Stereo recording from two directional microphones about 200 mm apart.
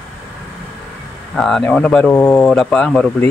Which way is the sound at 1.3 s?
Centre (ahead or behind).